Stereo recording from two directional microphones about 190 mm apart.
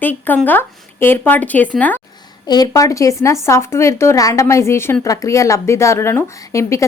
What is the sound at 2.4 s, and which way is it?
A woman's voice, 20° left (ahead or behind).